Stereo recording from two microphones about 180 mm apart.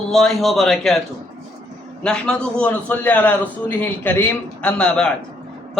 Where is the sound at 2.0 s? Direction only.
5° left (ahead or behind).